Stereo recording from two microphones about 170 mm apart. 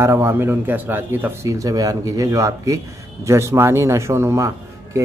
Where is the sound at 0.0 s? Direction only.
15° right (ahead or behind).